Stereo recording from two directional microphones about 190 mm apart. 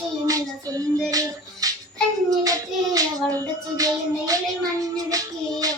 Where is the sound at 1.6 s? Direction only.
20° right (ahead or behind).